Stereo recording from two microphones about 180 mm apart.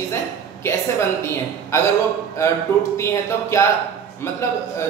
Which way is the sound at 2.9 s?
15° left (ahead or behind).